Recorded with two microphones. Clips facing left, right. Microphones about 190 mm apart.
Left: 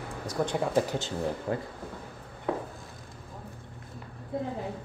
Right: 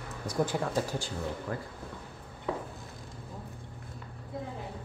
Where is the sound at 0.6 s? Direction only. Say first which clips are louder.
Left 4 dB; 15° left (ahead or behind).